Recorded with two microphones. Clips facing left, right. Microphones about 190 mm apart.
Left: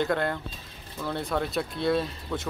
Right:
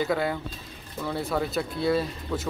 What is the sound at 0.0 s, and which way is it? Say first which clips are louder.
Speech: right 1 dB; 5° right (ahead or behind).